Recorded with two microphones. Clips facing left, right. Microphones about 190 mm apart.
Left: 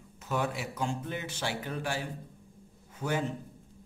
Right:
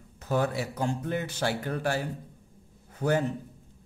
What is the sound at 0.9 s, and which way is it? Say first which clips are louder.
Speech: right 5 dB; 50° right (ahead or behind).